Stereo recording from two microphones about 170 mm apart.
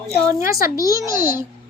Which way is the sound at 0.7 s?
20° left (ahead or behind).